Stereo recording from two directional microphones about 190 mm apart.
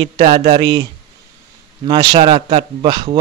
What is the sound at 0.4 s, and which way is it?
Speech, 35° right (ahead or behind).